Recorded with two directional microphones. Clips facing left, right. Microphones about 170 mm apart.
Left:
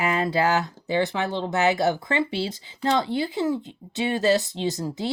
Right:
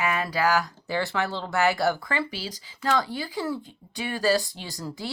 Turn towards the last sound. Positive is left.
turn(degrees=20)  # may be behind; listen again after turning